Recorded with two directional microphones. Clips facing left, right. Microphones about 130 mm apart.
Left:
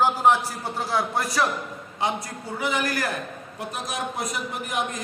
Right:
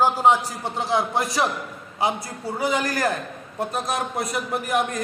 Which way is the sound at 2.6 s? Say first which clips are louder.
Right 3 dB; 40° right (ahead or behind).